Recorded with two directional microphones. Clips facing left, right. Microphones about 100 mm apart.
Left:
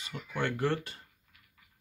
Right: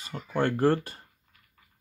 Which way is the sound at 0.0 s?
40° right (ahead or behind).